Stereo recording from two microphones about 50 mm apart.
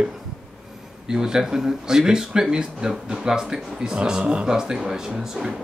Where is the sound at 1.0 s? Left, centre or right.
Centre.